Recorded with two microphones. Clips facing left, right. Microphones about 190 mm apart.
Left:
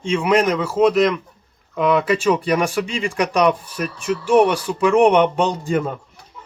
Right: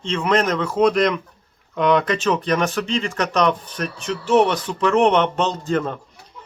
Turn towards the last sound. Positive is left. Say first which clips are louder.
# left 1 dB
turn(degrees=10)  # may be behind; listen again after turning